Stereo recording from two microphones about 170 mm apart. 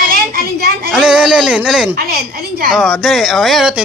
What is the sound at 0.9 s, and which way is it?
Speech, 5° right (ahead or behind).